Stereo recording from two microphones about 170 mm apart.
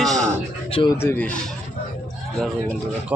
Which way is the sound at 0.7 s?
30° left (ahead or behind).